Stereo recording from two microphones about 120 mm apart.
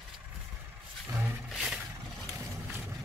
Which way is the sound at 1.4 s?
5° right (ahead or behind).